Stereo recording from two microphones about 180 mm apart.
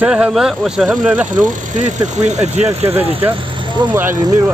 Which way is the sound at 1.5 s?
45° right (ahead or behind).